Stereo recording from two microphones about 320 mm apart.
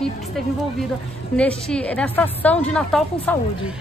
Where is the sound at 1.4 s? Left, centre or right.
Centre.